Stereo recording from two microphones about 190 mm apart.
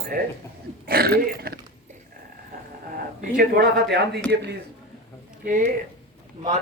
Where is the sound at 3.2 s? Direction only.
50° right (ahead or behind).